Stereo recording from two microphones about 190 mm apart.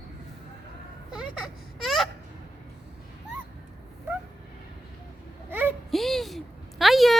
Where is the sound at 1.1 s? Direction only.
Centre (ahead or behind).